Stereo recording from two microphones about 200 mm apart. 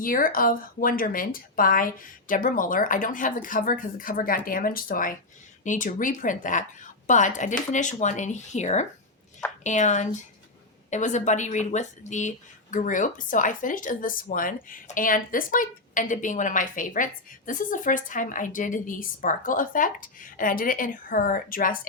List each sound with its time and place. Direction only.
0.0 s speech: 45° left (ahead or behind)